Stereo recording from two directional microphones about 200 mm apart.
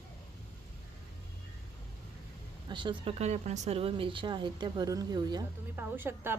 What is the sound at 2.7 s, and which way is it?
A woman's voice, 25° right (ahead or behind).